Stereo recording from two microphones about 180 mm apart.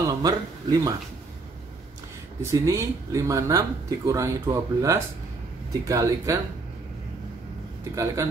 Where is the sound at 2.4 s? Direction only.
15° right (ahead or behind).